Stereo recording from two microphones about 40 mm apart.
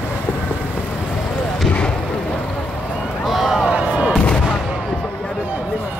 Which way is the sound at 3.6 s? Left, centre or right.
Right.